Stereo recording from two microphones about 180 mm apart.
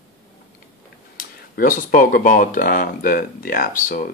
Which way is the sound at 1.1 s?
50° left (ahead or behind).